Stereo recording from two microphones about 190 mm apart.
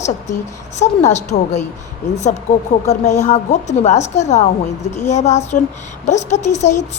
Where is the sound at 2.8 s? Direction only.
35° left (ahead or behind).